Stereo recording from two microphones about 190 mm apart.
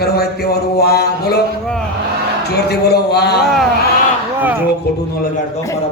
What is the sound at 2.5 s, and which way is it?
Speech, 60° left (ahead or behind).